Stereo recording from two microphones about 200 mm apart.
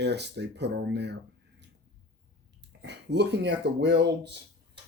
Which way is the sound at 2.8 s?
60° right (ahead or behind).